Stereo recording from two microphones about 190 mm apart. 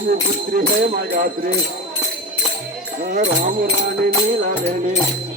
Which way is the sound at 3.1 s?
45° right (ahead or behind).